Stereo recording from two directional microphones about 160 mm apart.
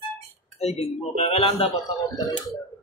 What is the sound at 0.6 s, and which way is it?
Speech, 40° left (ahead or behind).